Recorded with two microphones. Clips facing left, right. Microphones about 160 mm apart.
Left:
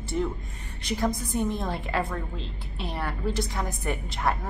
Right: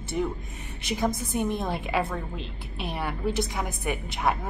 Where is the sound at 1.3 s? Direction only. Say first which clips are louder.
Right 1 dB; 15° right (ahead or behind).